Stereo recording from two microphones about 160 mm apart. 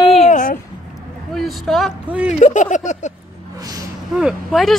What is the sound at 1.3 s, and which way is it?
Speech, centre (ahead or behind).